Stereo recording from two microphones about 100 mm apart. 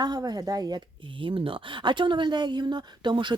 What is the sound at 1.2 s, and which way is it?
Speech, 60° right (ahead or behind).